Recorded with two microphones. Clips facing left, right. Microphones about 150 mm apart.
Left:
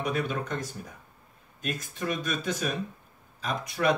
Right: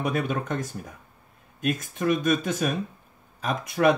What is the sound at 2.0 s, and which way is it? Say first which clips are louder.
Speech: right 8 dB; 50° right (ahead or behind).